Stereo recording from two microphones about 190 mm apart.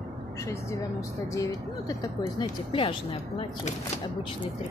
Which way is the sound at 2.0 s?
25° left (ahead or behind).